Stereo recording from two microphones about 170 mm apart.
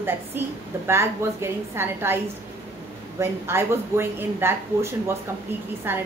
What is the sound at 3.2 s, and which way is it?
A woman's voice, 15° right (ahead or behind).